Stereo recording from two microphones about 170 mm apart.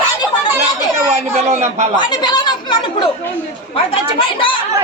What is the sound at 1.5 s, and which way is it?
Speech, 40° right (ahead or behind).